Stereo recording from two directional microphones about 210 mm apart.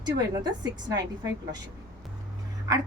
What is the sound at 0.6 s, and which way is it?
Speech, 20° right (ahead or behind).